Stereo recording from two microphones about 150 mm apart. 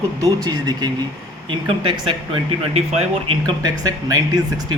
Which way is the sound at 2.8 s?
45° right (ahead or behind).